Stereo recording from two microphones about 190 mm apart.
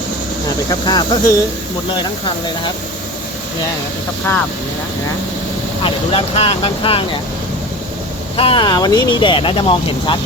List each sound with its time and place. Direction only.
0.7 s speech: 20° left (ahead or behind)
5.8 s speech: 30° left (ahead or behind)
8.4 s speech: 25° left (ahead or behind)